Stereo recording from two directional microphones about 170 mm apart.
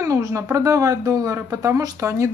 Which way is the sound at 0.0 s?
20° right (ahead or behind).